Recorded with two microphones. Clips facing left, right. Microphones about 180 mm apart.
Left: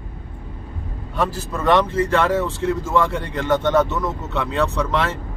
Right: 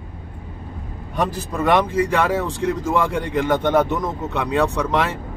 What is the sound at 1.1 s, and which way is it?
A man's voice, 15° right (ahead or behind).